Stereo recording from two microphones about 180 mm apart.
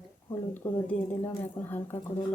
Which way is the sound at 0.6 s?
15° left (ahead or behind).